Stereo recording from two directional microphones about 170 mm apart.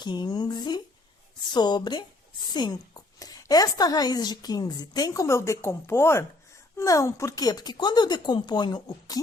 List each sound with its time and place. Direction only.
0.0 s a woman's voice: 25° left (ahead or behind)